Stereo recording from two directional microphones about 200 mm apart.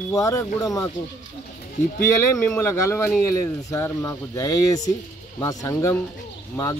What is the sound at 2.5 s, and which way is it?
Speech, 15° left (ahead or behind).